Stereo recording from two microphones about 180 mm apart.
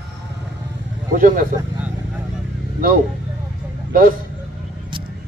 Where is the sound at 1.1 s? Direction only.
50° right (ahead or behind).